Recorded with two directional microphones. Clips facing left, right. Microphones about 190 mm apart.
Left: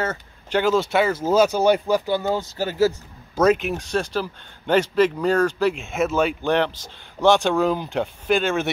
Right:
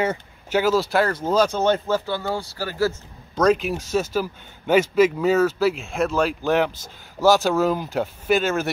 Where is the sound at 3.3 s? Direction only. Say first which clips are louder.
Left 1 dB; 5° left (ahead or behind).